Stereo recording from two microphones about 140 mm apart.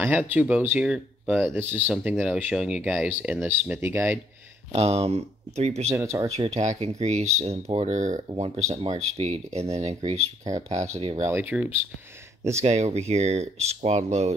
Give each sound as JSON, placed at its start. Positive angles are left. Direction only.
{"t": 0.0, "sound": "speech", "side_deg": -15}
{"t": 1.5, "sound": "speech", "side_deg": -15}
{"t": 4.7, "sound": "speech", "side_deg": -50}
{"t": 5.9, "sound": "speech", "side_deg": -20}
{"t": 6.3, "sound": "speech", "side_deg": -50}
{"t": 11.2, "sound": "speech", "side_deg": -15}
{"t": 12.6, "sound": "speech", "side_deg": -50}